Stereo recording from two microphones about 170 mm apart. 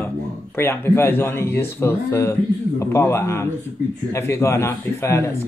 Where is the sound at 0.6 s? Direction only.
15° left (ahead or behind).